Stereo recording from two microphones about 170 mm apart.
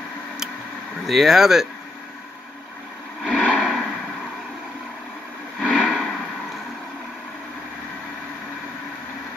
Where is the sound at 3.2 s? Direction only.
Centre (ahead or behind).